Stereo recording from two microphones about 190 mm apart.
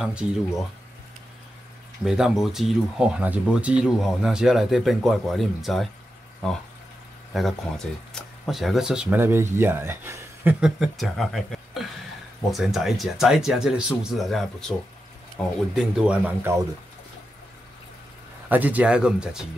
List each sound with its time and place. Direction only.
0.0 s speech: 5° right (ahead or behind)
2.0 s speech: 5° right (ahead or behind)
7.3 s speech: centre (ahead or behind)
18.5 s speech: 10° right (ahead or behind)